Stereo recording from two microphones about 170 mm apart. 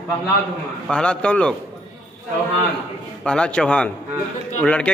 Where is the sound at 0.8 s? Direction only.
5° left (ahead or behind).